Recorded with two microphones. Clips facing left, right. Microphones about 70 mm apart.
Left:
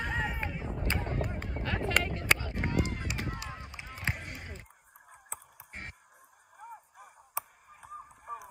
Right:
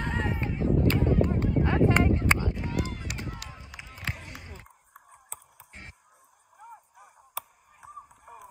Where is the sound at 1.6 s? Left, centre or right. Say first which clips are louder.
Right 7 dB; right.